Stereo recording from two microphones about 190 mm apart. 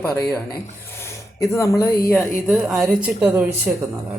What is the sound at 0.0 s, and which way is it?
Speech, 10° left (ahead or behind).